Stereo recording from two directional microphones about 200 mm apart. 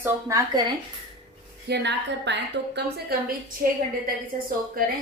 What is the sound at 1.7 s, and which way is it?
A woman's voice, 60° right (ahead or behind).